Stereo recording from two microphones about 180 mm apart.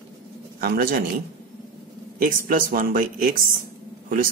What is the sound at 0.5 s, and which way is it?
Speech, 55° right (ahead or behind).